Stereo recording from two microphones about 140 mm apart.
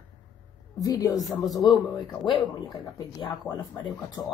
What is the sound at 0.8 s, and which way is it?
Speech, 25° left (ahead or behind).